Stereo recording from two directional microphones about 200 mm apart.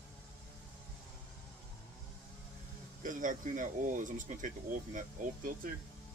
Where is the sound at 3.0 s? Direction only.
40° right (ahead or behind).